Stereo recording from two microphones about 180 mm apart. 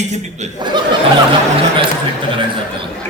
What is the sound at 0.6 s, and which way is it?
Snicker, 25° right (ahead or behind).